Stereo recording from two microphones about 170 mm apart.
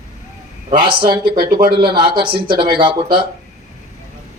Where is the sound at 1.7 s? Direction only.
30° right (ahead or behind).